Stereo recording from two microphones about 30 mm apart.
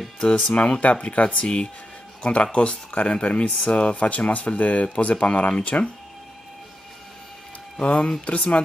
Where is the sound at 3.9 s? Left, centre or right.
Left.